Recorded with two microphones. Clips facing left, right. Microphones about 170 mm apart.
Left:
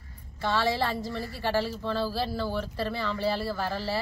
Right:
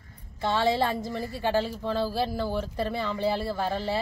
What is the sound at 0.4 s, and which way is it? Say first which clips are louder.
A woman's voice: right 2 dB; 20° right (ahead or behind).